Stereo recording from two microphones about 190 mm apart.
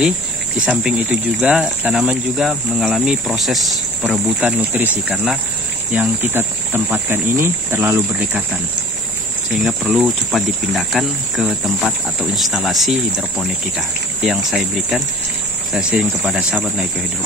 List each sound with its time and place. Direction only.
0.7 s speech: 5° right (ahead or behind)
9.7 s speech: centre (ahead or behind)